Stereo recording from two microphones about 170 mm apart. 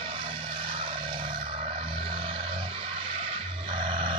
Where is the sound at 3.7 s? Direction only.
30° right (ahead or behind).